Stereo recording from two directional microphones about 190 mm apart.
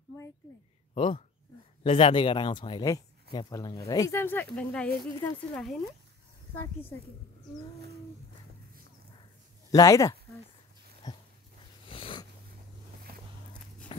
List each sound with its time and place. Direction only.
0.9 s a woman's voice: 25° left (ahead or behind); by 7.0 s 10° left (ahead or behind)
9.7 s speech: 20° left (ahead or behind)
11.0 s a sound: 20° left (ahead or behind)
11.9 s dog: 25° left (ahead or behind)